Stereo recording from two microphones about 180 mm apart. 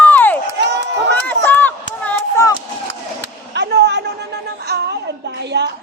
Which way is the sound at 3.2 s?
70° right (ahead or behind).